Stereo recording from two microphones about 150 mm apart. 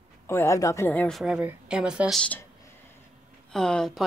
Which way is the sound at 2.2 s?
10° left (ahead or behind).